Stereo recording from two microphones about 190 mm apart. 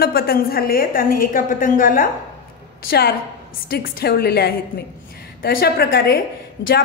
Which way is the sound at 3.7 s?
50° left (ahead or behind).